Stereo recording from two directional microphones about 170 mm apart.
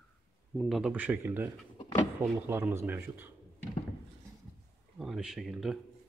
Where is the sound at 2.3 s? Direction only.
15° right (ahead or behind).